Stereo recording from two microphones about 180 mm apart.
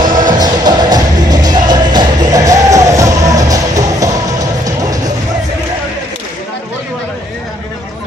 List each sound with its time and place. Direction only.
0.2 s music: 20° right (ahead or behind)